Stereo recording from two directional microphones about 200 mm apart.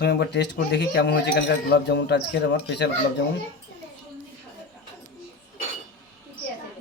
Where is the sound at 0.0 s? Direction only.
55° left (ahead or behind).